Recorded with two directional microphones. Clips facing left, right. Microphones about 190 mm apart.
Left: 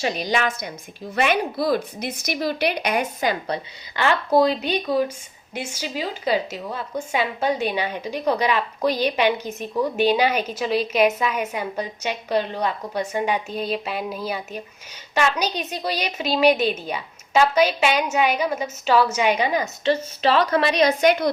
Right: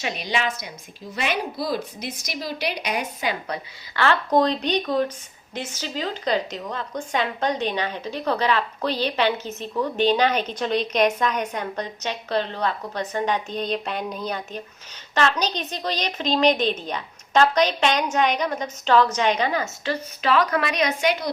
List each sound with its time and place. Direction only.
0.0 s a woman's voice: 40° left (ahead or behind)
3.9 s a woman's voice: 15° left (ahead or behind)
19.8 s a woman's voice: 25° left (ahead or behind)
21.0 s a woman's voice: 50° left (ahead or behind)